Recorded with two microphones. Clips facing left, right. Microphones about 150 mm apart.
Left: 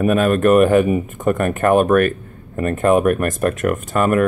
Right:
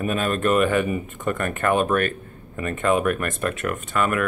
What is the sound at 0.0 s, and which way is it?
Speech, 50° left (ahead or behind).